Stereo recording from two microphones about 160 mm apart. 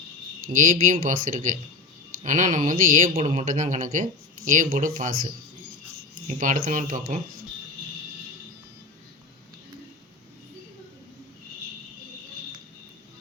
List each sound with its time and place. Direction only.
0.4 s speech: 55° right (ahead or behind)
6.2 s speech: 55° right (ahead or behind)